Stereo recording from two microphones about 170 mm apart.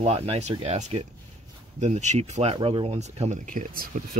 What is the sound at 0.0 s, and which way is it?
Speech, 35° right (ahead or behind).